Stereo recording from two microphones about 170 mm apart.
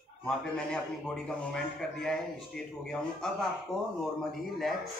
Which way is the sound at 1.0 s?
5° left (ahead or behind).